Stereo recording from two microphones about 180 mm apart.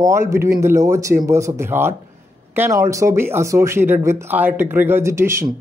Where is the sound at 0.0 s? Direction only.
15° right (ahead or behind).